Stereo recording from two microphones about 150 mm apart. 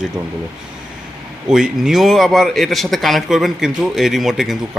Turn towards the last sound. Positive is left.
turn(degrees=0)  # may be behind; listen again after turning